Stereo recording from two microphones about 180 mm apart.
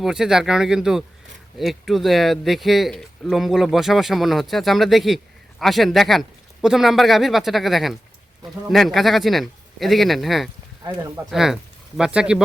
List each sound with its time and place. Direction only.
0.0 s speech: 5° right (ahead or behind)